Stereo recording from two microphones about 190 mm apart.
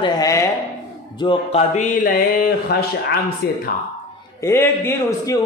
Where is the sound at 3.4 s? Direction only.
55° left (ahead or behind).